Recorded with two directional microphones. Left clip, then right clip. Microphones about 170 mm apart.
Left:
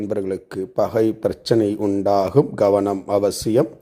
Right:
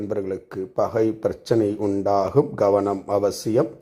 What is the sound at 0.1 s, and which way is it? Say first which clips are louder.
Speech: left 3 dB; 20° left (ahead or behind).